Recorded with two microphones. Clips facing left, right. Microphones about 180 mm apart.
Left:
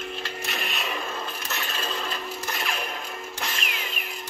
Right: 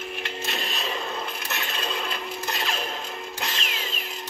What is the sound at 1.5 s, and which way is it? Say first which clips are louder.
Coin: right 1 dB; 20° right (ahead or behind).